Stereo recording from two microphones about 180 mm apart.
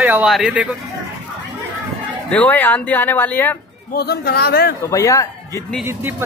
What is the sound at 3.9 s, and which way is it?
Speech, 60° left (ahead or behind).